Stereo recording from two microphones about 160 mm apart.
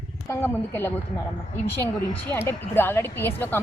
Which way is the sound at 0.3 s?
15° left (ahead or behind).